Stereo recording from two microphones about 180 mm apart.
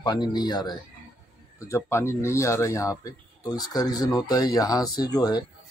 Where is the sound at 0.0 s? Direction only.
25° left (ahead or behind).